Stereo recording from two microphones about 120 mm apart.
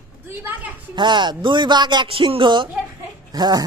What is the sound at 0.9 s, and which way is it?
Speech, 40° right (ahead or behind).